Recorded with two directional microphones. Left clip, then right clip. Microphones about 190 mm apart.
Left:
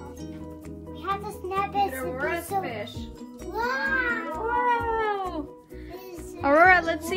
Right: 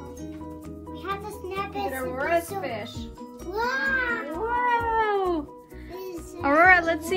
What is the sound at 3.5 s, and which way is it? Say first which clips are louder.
Music: right 1 dB; centre (ahead or behind).